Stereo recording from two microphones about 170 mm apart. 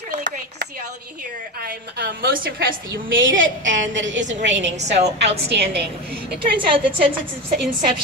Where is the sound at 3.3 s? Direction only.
90° right.